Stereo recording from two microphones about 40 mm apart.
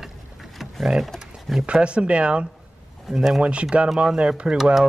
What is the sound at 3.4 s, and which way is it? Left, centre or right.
Speech, right.